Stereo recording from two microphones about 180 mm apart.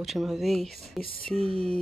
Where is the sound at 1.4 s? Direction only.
35° right (ahead or behind).